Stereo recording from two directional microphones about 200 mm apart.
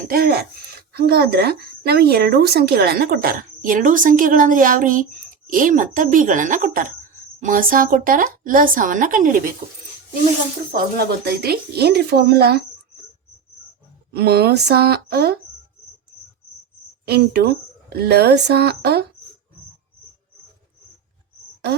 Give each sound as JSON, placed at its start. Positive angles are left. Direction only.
{"t": 0.1, "sound": "speech", "side_deg": -50}
{"t": 10.8, "sound": "speech", "side_deg": -50}
{"t": 14.1, "sound": "speech", "side_deg": -50}
{"t": 17.1, "sound": "speech", "side_deg": -55}